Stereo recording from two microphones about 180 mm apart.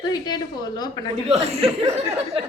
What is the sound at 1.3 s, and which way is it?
Speech, 35° right (ahead or behind).